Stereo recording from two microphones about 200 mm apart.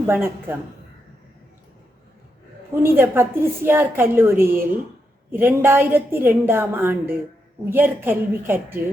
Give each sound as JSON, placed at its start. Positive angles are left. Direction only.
{"t": 0.1, "sound": "a woman's voice", "side_deg": -10}
{"t": 2.8, "sound": "a woman's voice", "side_deg": -10}